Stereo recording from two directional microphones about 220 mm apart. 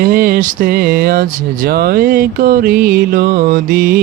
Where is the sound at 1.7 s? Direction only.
45° right (ahead or behind).